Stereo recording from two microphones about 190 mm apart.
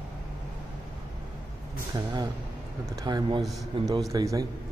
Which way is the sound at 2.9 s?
20° right (ahead or behind).